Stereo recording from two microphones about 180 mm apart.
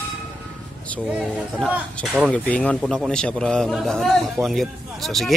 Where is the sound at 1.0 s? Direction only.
5° right (ahead or behind).